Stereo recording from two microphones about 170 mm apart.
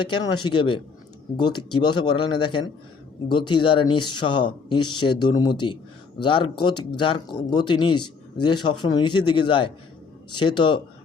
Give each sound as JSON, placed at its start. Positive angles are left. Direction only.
{"t": 0.1, "sound": "speech", "side_deg": 30}